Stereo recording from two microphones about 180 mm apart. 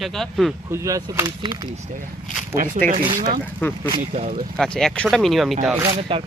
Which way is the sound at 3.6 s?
10° left (ahead or behind).